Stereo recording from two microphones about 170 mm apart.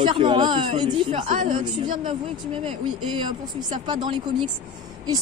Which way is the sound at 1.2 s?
50° right (ahead or behind).